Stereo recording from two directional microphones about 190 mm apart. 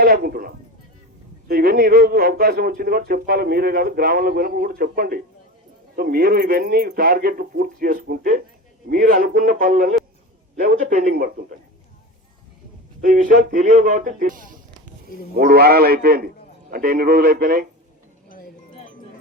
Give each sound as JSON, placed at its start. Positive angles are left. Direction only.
{"t": 0.0, "sound": "speech", "side_deg": -50}
{"t": 13.0, "sound": "speech", "side_deg": -45}
{"t": 18.3, "sound": "cowbell", "side_deg": 45}